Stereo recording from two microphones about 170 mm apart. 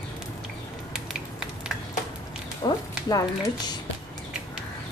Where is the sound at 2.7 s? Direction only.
25° left (ahead or behind).